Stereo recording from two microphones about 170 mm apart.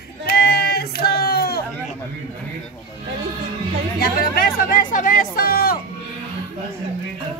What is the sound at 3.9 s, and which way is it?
Chatter, 60° left (ahead or behind).